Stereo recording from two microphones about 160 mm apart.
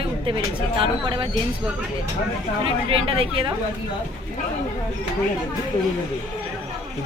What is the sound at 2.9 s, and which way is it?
Speech, 35° right (ahead or behind).